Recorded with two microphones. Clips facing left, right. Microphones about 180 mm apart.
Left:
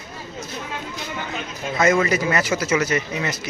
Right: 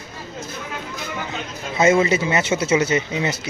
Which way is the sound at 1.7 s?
25° right (ahead or behind).